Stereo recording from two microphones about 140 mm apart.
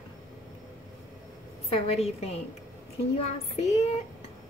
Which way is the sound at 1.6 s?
45° left (ahead or behind).